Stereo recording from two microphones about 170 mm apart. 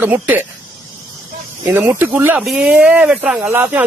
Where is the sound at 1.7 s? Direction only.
10° right (ahead or behind).